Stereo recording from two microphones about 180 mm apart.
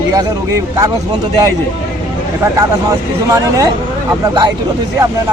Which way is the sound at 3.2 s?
20° right (ahead or behind).